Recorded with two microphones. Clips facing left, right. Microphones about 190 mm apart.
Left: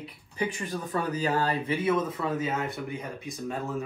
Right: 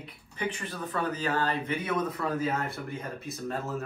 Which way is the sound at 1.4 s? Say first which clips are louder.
Left 2 dB; 35° left (ahead or behind).